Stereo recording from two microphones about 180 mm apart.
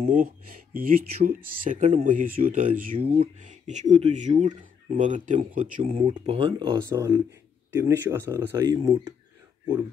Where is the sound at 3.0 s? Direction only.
35° right (ahead or behind).